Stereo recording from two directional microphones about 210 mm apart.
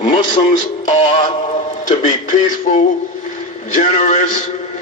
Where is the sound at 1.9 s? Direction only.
35° left (ahead or behind).